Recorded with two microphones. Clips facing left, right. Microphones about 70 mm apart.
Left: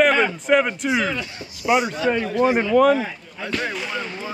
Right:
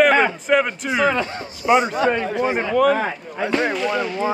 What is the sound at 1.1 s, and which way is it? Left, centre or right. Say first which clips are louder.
Speech: right 7 dB; right.